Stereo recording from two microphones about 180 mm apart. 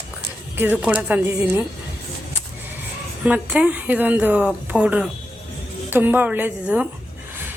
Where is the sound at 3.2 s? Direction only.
5° right (ahead or behind).